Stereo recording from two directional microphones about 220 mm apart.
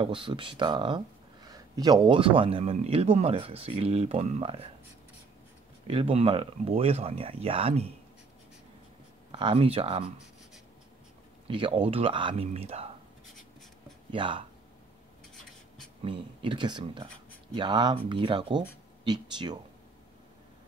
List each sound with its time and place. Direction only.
0.0 s speech: 25° right (ahead or behind)
5.9 s speech: 25° right (ahead or behind)
9.3 s speech: 25° right (ahead or behind)
11.4 s speech: 25° right (ahead or behind)
14.1 s speech: 25° right (ahead or behind)
16.0 s speech: 25° right (ahead or behind)